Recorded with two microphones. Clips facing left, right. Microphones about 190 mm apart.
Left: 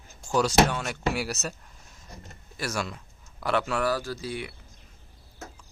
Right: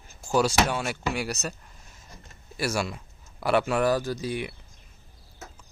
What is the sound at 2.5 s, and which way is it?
Speech, 10° right (ahead or behind).